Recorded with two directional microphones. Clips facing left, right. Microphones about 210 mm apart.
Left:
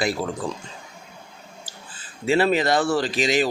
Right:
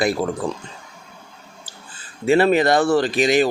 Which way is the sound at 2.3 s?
55° right (ahead or behind).